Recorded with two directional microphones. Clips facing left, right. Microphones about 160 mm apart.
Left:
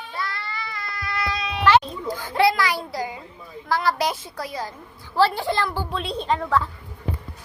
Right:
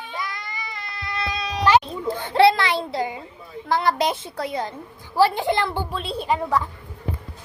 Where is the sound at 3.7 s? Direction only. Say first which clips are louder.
Right 2 dB; 20° right (ahead or behind).